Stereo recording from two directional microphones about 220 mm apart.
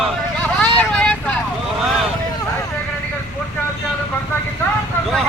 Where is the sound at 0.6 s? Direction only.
5° left (ahead or behind).